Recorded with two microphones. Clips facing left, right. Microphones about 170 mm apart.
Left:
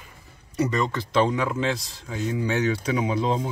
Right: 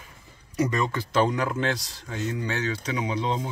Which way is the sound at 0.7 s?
5° right (ahead or behind).